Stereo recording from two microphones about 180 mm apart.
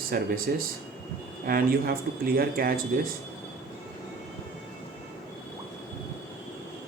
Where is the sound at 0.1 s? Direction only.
55° right (ahead or behind).